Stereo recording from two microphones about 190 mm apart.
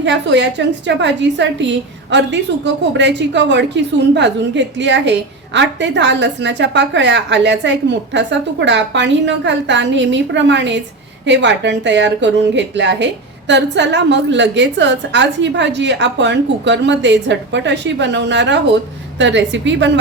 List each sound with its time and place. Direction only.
0.0 s a woman's voice: 70° right (ahead or behind)